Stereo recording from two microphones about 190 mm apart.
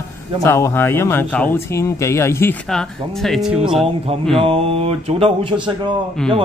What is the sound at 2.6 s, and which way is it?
Speech, centre (ahead or behind).